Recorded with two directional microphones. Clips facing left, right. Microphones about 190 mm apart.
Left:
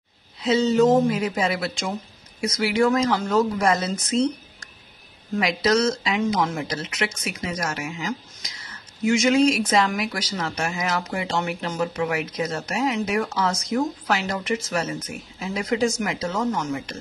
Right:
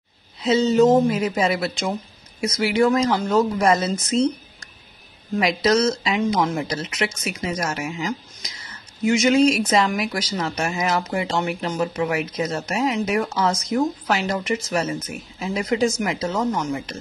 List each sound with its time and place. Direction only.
0.4 s speech: 20° right (ahead or behind)
9.0 s speech: 20° right (ahead or behind)